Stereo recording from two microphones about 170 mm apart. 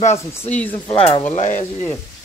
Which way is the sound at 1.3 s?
45° left (ahead or behind).